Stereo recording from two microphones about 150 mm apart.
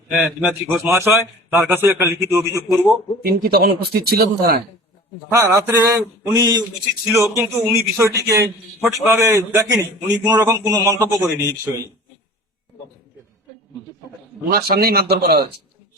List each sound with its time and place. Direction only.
0.1 s a man's voice: centre (ahead or behind)
0.9 s a man's voice: 15° right (ahead or behind)
3.2 s speech: 90° right
5.3 s a man's voice: 20° right (ahead or behind)
14.5 s speech: 85° right